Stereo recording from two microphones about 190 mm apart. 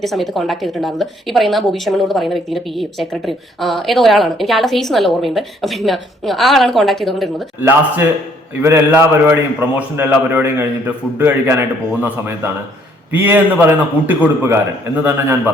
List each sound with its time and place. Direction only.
0.0 s a woman's voice: centre (ahead or behind)
7.6 s a man's voice: 10° right (ahead or behind)